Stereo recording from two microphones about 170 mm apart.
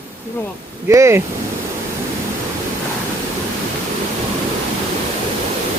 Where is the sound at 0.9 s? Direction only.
15° right (ahead or behind).